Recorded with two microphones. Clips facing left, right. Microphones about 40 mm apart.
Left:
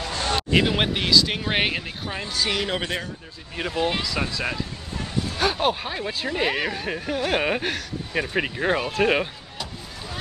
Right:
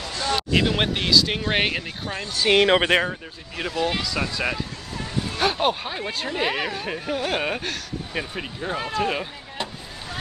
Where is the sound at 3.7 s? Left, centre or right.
Centre.